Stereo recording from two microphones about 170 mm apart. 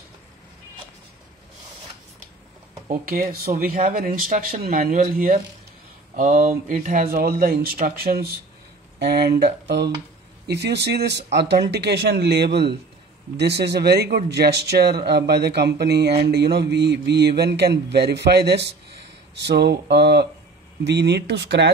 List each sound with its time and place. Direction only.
2.9 s speech: 60° right (ahead or behind)
9.0 s speech: 75° right (ahead or behind)